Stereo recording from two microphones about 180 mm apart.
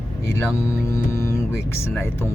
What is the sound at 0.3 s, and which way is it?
Speech, 15° left (ahead or behind).